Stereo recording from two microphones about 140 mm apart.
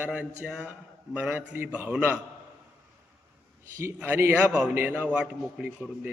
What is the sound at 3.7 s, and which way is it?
A man's voice, 20° right (ahead or behind).